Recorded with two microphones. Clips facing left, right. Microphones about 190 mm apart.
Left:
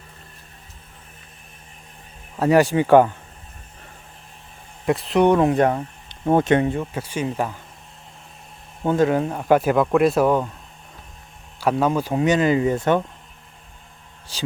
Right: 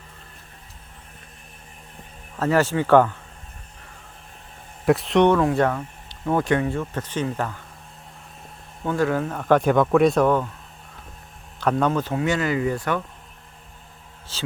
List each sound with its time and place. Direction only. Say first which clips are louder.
2.3 s speech: left 4 dB; 15° left (ahead or behind)
4.9 s speech: right 1 dB; centre (ahead or behind)
5.3 s speech: left 2 dB; 20° left (ahead or behind)
8.8 s speech: left 4 dB; 20° left (ahead or behind)
11.6 s speech: left 1 dB; 10° left (ahead or behind)
14.3 s speech: left 2 dB; 15° left (ahead or behind)